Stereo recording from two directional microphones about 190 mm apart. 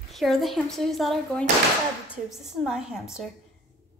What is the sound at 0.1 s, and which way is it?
A woman's voice, centre (ahead or behind).